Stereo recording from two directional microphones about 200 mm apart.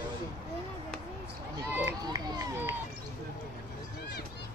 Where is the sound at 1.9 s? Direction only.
20° right (ahead or behind).